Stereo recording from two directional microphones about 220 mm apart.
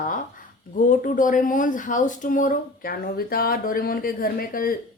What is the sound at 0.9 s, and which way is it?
Speech, 35° left (ahead or behind).